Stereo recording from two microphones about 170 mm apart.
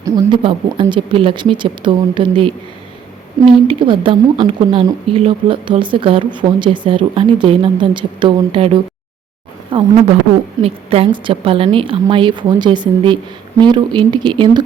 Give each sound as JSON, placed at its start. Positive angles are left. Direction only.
{"t": 0.0, "sound": "a woman's voice", "side_deg": -30}